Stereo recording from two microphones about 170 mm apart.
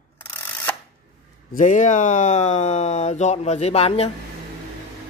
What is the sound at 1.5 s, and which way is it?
Speech, 45° left (ahead or behind).